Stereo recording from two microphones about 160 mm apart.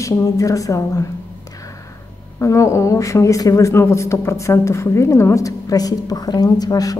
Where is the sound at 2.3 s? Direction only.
20° left (ahead or behind).